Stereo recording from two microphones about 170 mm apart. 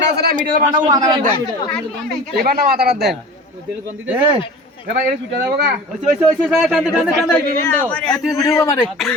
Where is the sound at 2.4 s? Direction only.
65° right (ahead or behind).